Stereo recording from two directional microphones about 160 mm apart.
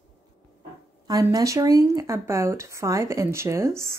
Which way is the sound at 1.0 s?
25° right (ahead or behind).